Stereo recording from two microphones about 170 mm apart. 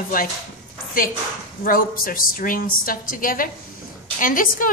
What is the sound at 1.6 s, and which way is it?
A woman's voice, 55° left (ahead or behind).